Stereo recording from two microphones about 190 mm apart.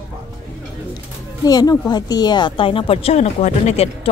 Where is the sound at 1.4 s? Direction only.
20° left (ahead or behind).